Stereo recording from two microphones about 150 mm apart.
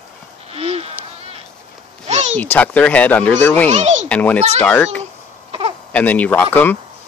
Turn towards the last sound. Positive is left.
turn(degrees=10)  # may be behind; listen again after turning